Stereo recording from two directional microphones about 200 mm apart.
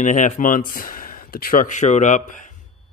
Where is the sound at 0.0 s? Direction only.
40° left (ahead or behind).